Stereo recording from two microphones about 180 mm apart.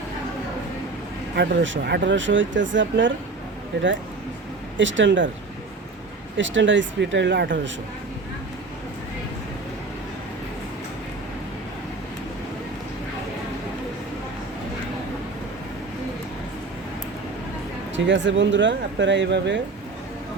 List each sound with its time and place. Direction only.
1.4 s speech: 80° right
4.8 s speech: 90° right
6.3 s speech: 90° right
17.9 s speech: 90° right